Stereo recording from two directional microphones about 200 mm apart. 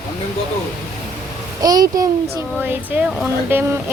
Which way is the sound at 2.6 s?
5° right (ahead or behind).